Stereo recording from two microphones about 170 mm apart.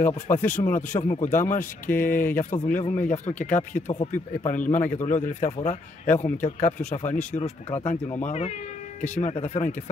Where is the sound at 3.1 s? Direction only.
45° left (ahead or behind).